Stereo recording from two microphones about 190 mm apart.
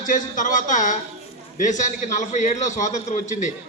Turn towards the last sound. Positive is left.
turn(degrees=40)  # may be behind; listen again after turning